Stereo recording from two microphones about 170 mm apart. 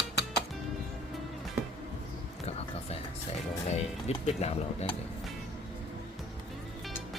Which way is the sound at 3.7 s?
40° left (ahead or behind).